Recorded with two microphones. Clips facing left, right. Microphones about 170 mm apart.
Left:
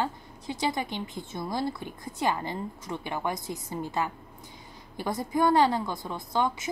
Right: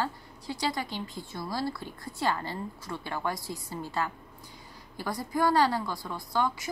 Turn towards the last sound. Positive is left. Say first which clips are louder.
# left 2 dB
turn(degrees=20)  # may be behind; listen again after turning